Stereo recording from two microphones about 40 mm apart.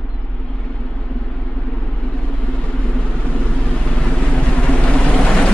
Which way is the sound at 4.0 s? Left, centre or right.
Left.